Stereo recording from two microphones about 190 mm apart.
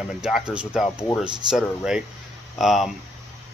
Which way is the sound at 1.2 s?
25° right (ahead or behind).